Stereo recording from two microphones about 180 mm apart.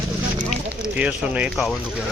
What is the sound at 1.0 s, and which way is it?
Speech, 5° right (ahead or behind).